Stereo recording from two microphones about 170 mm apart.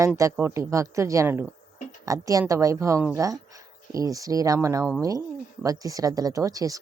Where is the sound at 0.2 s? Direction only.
15° right (ahead or behind).